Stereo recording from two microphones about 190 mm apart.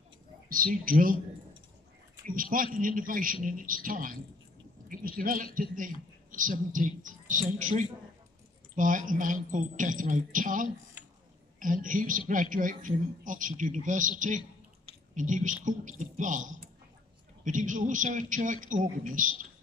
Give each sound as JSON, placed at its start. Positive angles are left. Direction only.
{"t": 0.5, "sound": "speech", "side_deg": -45}
{"t": 2.2, "sound": "speech", "side_deg": -45}